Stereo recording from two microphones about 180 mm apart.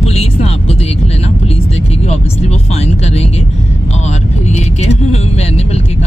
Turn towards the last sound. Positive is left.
turn(degrees=35)  # may be behind; listen again after turning